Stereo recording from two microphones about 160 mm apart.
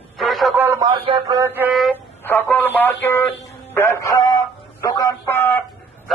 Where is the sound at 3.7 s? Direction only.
20° left (ahead or behind).